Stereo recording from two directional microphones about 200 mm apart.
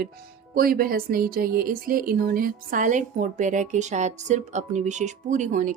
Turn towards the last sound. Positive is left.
turn(degrees=-40)  # may be behind; listen again after turning